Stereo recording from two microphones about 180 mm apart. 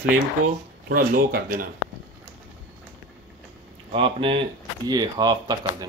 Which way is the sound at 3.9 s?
30° right (ahead or behind).